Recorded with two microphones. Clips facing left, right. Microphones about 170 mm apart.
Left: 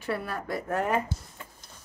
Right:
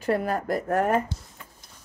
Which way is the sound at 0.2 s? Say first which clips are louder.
Right 7 dB; 70° right (ahead or behind).